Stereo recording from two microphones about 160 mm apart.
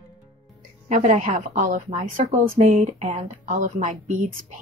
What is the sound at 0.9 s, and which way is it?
A woman's voice, 50° right (ahead or behind).